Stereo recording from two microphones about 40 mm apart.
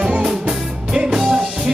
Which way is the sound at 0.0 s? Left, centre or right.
Right.